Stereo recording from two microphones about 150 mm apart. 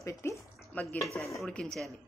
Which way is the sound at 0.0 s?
20° left (ahead or behind).